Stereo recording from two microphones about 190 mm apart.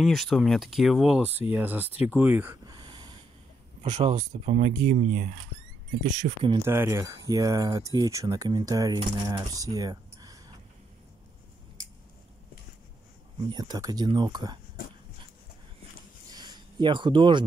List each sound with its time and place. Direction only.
0.0 s speech: centre (ahead or behind); by 3.2 s 25° right (ahead or behind)
3.8 s speech: 35° right (ahead or behind)
6.4 s speech: 25° right (ahead or behind)
6.7 s speech: 15° right (ahead or behind)
13.5 s speech: 20° right (ahead or behind)
16.3 s a sound: 20° right (ahead or behind)